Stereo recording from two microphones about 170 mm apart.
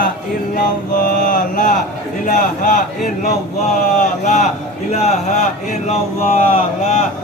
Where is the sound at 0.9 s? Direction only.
50° left (ahead or behind).